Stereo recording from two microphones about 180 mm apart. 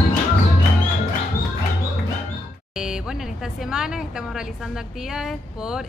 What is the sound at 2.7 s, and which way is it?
A woman's voice, 5° right (ahead or behind).